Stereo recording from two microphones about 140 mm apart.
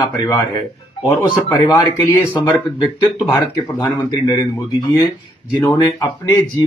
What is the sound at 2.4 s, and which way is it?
Speech, 25° left (ahead or behind).